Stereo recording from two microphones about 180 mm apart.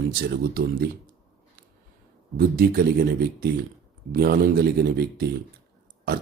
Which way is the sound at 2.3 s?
55° right (ahead or behind).